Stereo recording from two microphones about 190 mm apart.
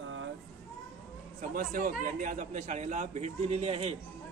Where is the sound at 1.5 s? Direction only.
45° right (ahead or behind).